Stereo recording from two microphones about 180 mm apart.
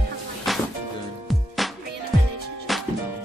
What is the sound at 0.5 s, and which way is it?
Music, centre (ahead or behind).